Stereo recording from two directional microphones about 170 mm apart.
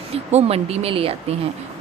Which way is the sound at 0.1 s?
40° right (ahead or behind).